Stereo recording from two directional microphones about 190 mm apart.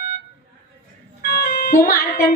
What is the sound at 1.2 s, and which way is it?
Music, 50° left (ahead or behind).